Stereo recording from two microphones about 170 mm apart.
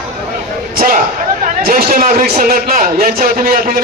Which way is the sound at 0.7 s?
55° right (ahead or behind).